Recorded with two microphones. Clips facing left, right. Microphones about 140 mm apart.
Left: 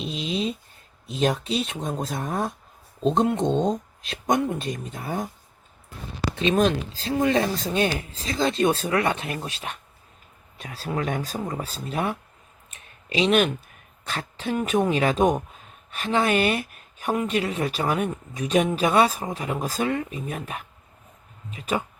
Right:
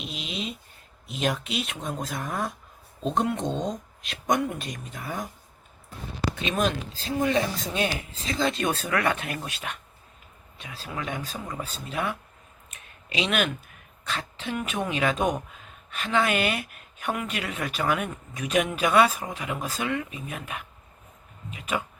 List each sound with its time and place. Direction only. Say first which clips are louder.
0.0 s a sound: left 7 dB; 35° left (ahead or behind)
1.0 s speech: left 4 dB; 35° left (ahead or behind)
6.3 s speech: left 7 dB; 30° left (ahead or behind)
10.6 s speech: left 7 dB; 45° left (ahead or behind)
13.1 s speech: left 6 dB; 35° left (ahead or behind)